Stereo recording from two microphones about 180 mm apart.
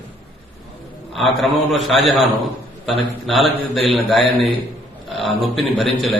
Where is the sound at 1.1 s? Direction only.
Centre (ahead or behind).